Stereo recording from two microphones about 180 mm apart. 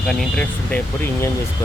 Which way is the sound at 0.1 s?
5° left (ahead or behind).